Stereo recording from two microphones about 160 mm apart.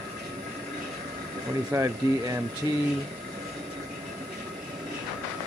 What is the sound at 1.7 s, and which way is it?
Speech, 15° right (ahead or behind).